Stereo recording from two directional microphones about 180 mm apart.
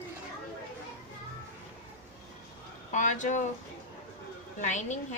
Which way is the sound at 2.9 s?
45° left (ahead or behind).